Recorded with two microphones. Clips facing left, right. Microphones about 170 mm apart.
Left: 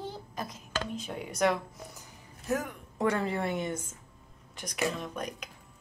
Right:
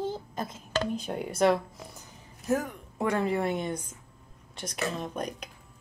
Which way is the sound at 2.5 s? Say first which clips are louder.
Right 3 dB; 15° right (ahead or behind).